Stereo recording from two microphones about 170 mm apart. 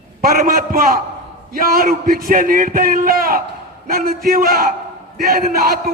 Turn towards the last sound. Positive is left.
turn(degrees=-60)  # may be behind; listen again after turning